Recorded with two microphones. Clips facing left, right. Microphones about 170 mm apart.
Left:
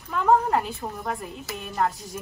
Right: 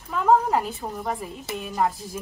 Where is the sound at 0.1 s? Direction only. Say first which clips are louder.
Right 1 dB; centre (ahead or behind).